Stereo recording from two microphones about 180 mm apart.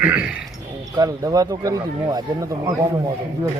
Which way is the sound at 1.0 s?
20° right (ahead or behind).